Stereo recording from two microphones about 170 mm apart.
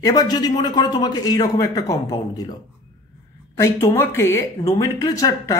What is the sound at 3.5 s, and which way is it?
Speech, 15° left (ahead or behind).